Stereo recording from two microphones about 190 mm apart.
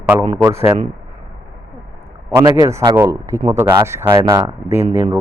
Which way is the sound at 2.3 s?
15° right (ahead or behind).